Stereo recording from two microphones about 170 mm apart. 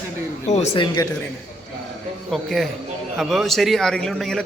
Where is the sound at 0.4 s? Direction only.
40° left (ahead or behind).